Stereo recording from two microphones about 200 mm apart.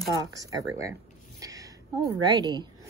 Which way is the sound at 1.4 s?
15° right (ahead or behind).